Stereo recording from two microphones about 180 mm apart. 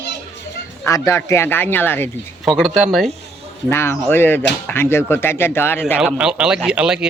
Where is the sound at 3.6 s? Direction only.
15° left (ahead or behind).